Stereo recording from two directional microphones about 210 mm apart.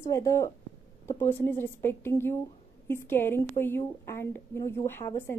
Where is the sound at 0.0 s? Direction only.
15° left (ahead or behind).